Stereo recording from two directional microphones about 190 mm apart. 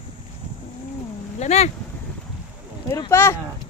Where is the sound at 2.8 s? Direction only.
15° left (ahead or behind).